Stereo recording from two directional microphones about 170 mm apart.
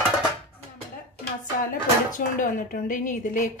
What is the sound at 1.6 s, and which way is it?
Speech, 50° left (ahead or behind).